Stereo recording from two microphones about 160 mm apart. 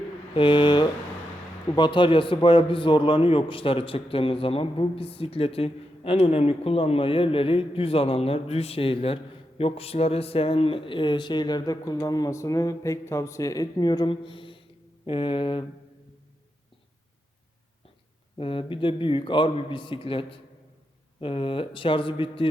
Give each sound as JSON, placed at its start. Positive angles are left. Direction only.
{"t": 0.3, "sound": "a man's voice", "side_deg": 30}
{"t": 18.3, "sound": "a man's voice", "side_deg": 35}